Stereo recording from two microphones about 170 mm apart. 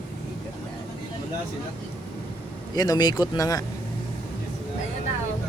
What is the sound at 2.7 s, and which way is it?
Speech, 25° left (ahead or behind).